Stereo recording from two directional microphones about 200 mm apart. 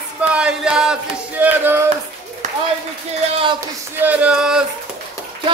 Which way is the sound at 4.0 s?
5° right (ahead or behind).